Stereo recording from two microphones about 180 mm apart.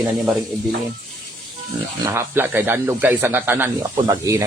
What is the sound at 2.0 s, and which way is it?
Speech, 15° right (ahead or behind).